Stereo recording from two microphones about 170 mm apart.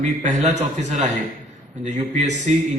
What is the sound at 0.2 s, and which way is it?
Speech, 45° right (ahead or behind).